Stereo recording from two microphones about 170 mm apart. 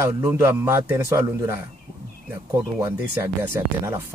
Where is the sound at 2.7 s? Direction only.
15° right (ahead or behind).